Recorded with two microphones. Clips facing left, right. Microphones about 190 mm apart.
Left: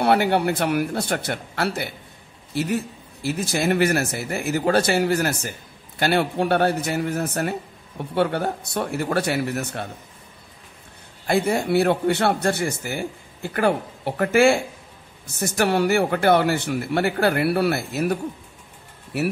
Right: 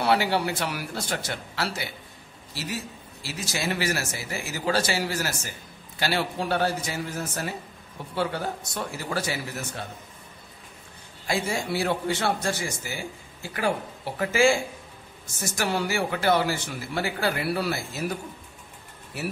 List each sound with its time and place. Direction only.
0.0 s a man's voice: 55° left (ahead or behind)
11.2 s a man's voice: 60° left (ahead or behind)
19.1 s a man's voice: 65° left (ahead or behind)